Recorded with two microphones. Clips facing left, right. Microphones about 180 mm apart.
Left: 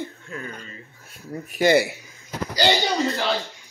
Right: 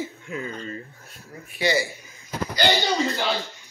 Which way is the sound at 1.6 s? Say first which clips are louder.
Left 6 dB; 60° left (ahead or behind).